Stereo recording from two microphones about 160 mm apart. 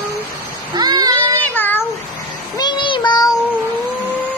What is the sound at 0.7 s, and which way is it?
Child singing, 25° right (ahead or behind).